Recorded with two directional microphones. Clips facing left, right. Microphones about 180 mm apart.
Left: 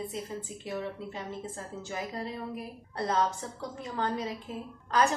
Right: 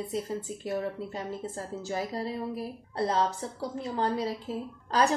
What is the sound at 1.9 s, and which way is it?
A woman's voice, 35° right (ahead or behind).